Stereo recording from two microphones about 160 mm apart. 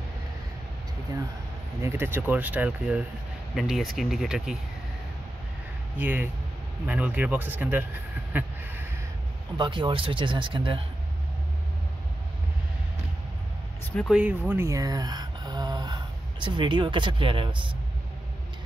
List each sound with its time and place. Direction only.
1.8 s speech: 15° right (ahead or behind)
5.9 s speech: 10° right (ahead or behind)
8.3 s duck: 10° right (ahead or behind)
9.6 s speech: 30° right (ahead or behind)
13.9 s speech: 5° right (ahead or behind); by 17.7 s 30° right (ahead or behind)